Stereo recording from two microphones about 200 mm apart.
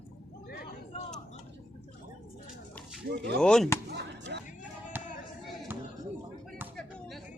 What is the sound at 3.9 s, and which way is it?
Chop, 55° right (ahead or behind).